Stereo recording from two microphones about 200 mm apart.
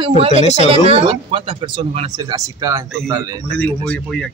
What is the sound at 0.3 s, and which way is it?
Speech, 35° left (ahead or behind).